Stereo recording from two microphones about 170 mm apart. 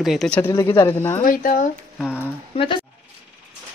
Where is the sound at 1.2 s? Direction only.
55° left (ahead or behind).